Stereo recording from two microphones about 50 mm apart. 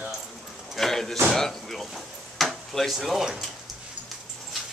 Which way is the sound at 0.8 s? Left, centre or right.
Centre.